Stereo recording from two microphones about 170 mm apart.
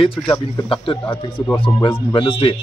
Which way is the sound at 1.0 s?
15° left (ahead or behind).